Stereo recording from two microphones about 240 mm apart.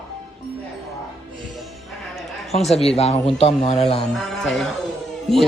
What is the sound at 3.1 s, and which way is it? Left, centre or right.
Speech, left.